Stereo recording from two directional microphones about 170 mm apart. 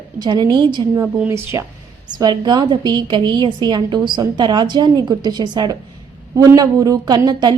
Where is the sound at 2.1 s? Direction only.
25° right (ahead or behind).